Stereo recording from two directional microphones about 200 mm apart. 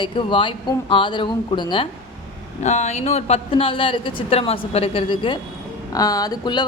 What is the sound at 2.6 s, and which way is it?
Speech, 35° left (ahead or behind).